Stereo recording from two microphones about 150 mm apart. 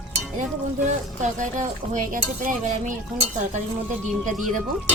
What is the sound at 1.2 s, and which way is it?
Stir, 55° right (ahead or behind).